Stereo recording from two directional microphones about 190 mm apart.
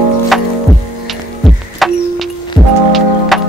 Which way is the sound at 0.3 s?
Centre (ahead or behind).